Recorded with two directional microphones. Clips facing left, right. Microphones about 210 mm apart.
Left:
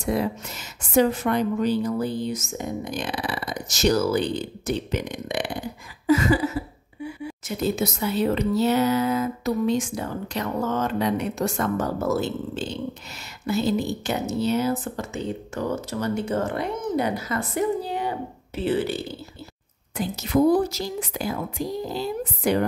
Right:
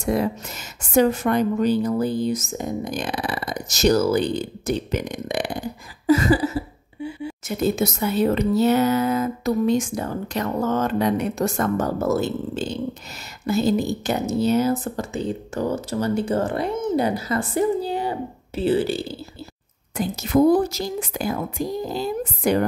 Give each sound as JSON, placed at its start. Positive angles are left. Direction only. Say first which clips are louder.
{"t": 0.0, "sound": "a woman's voice", "louder": "right 2 dB", "side_deg": -45}
{"t": 6.0, "sound": "a sound", "louder": "right 2 dB", "side_deg": -35}
{"t": 7.4, "sound": "a woman's voice", "louder": "right 3 dB", "side_deg": -45}
{"t": 20.0, "sound": "a woman's voice", "louder": "right 3 dB", "side_deg": -50}